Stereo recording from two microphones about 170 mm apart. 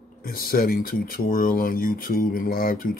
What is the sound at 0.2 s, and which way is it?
Speech, 60° left (ahead or behind).